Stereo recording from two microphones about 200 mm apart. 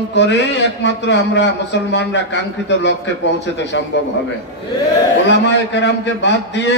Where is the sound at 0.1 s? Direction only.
60° left (ahead or behind).